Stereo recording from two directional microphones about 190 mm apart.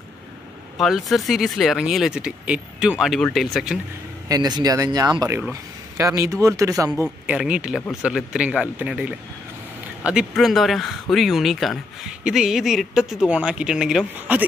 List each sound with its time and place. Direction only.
0.7 s speech: centre (ahead or behind)
4.3 s speech: 20° right (ahead or behind)
7.2 s speech: 5° right (ahead or behind)